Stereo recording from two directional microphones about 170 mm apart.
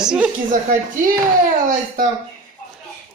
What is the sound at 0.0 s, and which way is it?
Speech, 5° right (ahead or behind).